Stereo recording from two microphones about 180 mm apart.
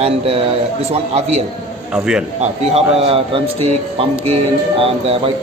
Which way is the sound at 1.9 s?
5° right (ahead or behind).